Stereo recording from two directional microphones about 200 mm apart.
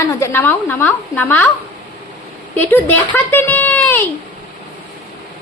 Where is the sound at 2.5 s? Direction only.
10° left (ahead or behind).